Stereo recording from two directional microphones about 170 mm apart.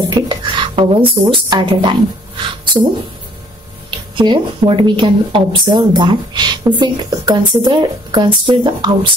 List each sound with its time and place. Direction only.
0.1 s speech: 30° right (ahead or behind)
4.1 s speech: 30° right (ahead or behind)